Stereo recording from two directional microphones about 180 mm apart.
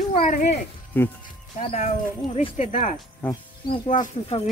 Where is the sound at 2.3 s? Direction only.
35° left (ahead or behind).